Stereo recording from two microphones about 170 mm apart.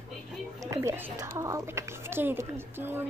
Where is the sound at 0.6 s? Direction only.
15° right (ahead or behind).